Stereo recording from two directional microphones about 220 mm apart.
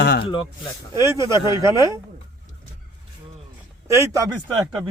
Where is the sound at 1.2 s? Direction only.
20° left (ahead or behind).